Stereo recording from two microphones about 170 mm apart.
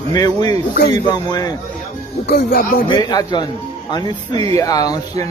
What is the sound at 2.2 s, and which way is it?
Speech, 65° left (ahead or behind).